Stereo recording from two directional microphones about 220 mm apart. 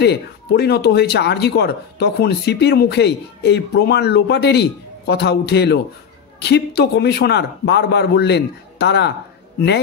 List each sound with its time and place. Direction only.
0.0 s speech: 50° left (ahead or behind)